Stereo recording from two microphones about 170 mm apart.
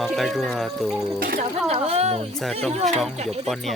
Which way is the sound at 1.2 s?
60° right (ahead or behind).